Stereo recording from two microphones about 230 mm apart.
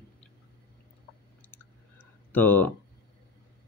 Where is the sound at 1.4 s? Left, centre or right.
Centre.